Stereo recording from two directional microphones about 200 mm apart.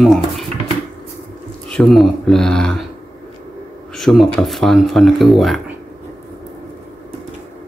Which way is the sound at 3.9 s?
Centre (ahead or behind).